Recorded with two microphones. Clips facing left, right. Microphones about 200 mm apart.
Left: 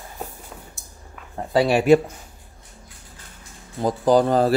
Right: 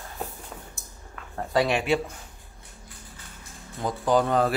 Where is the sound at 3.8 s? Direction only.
35° left (ahead or behind).